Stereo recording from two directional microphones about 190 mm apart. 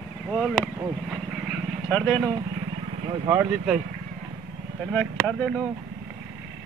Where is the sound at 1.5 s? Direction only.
5° left (ahead or behind).